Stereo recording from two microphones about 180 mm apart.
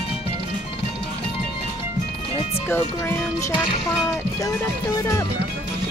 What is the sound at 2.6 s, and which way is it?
Speech, 15° left (ahead or behind).